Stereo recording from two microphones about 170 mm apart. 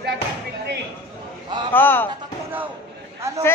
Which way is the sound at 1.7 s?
10° left (ahead or behind).